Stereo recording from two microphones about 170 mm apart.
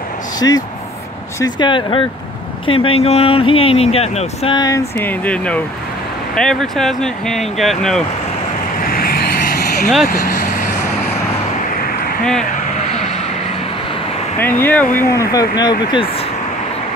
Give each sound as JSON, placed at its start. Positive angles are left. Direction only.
{"t": 0.4, "sound": "speech", "side_deg": 20}
{"t": 4.6, "sound": "speech", "side_deg": 20}
{"t": 8.8, "sound": "vehicle", "side_deg": 60}
{"t": 10.0, "sound": "speech", "side_deg": 50}
{"t": 14.4, "sound": "speech", "side_deg": 10}